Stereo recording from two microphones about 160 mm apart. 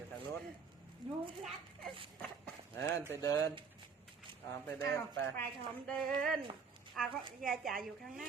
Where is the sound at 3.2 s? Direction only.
20° left (ahead or behind).